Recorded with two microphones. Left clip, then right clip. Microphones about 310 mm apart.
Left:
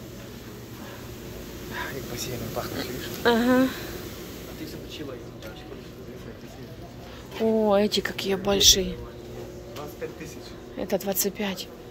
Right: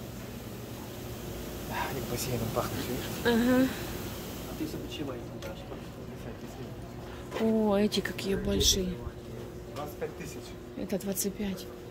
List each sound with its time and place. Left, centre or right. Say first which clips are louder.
1.7 s air conditioning: left 1 dB; right
3.3 s a woman's voice: left 5 dB; centre
7.3 s a woman's voice: left 6 dB; centre
10.8 s a woman's voice: left 7 dB; centre